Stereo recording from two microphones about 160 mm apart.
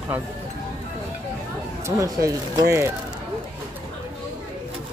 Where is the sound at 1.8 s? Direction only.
20° right (ahead or behind).